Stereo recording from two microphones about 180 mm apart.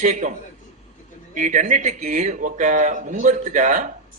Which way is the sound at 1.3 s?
45° right (ahead or behind).